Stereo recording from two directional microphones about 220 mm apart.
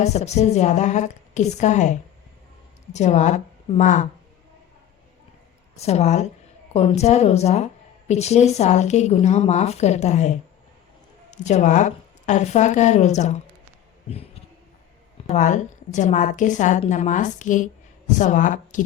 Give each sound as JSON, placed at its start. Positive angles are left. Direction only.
{"t": 0.0, "sound": "speech", "side_deg": 30}
{"t": 5.7, "sound": "speech", "side_deg": 30}
{"t": 15.3, "sound": "speech", "side_deg": 35}